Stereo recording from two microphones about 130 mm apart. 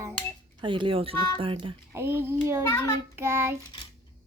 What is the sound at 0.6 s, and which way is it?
Speech, 40° right (ahead or behind).